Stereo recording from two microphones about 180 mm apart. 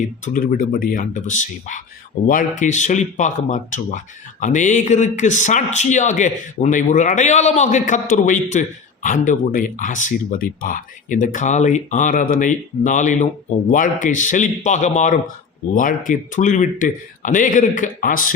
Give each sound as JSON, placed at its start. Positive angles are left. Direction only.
{"t": 0.3, "sound": "speech", "side_deg": 50}